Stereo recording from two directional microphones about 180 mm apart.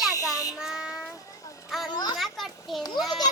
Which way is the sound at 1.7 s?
Centre (ahead or behind).